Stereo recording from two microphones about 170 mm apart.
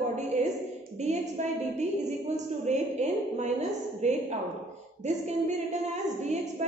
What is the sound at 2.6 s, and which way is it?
A woman's voice, 40° right (ahead or behind).